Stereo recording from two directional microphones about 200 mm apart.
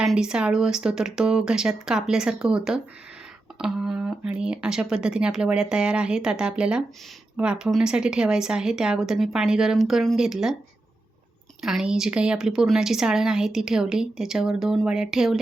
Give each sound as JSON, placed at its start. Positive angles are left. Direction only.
{"t": 0.0, "sound": "a woman's voice", "side_deg": -5}
{"t": 11.6, "sound": "a woman's voice", "side_deg": 0}